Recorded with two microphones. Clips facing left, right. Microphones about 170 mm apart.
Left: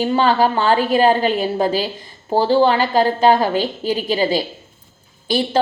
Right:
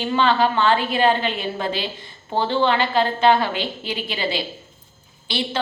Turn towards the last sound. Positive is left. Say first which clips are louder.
# left 7 dB
turn(degrees=45)  # may be behind; listen again after turning